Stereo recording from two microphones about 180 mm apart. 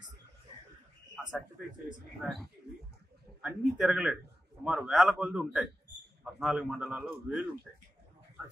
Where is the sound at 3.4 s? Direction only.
5° right (ahead or behind).